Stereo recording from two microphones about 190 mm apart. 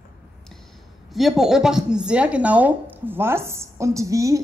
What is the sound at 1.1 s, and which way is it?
A woman's voice, centre (ahead or behind).